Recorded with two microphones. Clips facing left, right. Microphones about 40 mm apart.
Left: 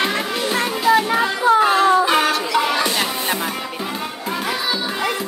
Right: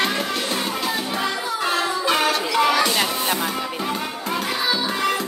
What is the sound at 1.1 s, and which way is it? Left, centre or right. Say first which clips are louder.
Music: left 9 dB; left.